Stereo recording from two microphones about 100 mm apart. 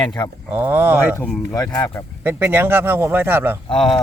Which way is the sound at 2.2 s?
20° right (ahead or behind).